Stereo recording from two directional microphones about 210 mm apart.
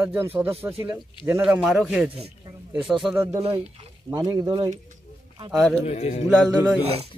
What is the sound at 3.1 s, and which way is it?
Speech, 10° right (ahead or behind).